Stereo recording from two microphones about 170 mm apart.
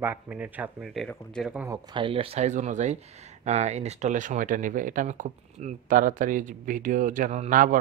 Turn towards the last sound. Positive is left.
turn(degrees=-50)  # may be behind; listen again after turning